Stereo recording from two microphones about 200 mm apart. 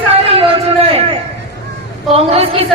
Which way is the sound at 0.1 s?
30° right (ahead or behind).